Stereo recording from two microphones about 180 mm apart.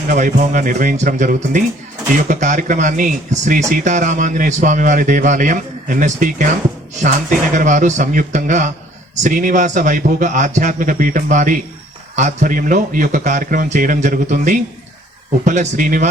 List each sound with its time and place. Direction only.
0.1 s a man's voice: 45° right (ahead or behind)